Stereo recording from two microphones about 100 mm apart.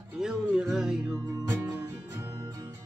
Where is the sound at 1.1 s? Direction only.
25° right (ahead or behind).